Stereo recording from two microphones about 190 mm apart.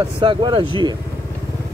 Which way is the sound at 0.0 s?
25° right (ahead or behind).